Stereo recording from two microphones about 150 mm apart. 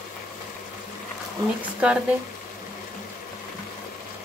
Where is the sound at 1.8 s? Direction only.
5° right (ahead or behind).